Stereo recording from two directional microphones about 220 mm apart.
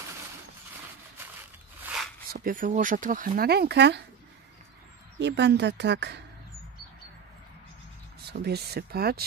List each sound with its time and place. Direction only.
2.3 s speech: 40° right (ahead or behind)
5.2 s a woman's voice: 50° right (ahead or behind)
8.3 s a woman's voice: 45° right (ahead or behind)